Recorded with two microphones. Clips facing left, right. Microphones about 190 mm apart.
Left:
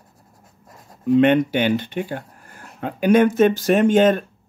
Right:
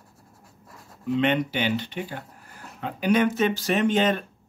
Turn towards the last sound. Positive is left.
turn(degrees=45)  # may be behind; listen again after turning